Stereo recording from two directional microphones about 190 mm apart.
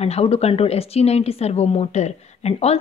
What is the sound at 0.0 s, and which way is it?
A woman's voice, 30° left (ahead or behind).